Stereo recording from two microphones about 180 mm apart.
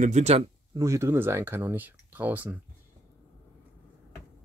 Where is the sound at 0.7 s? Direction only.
15° right (ahead or behind).